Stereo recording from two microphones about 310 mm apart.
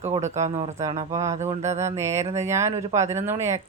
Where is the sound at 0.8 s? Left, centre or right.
Centre.